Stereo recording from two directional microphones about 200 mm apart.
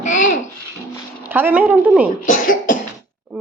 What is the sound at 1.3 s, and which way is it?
Speech, 10° right (ahead or behind).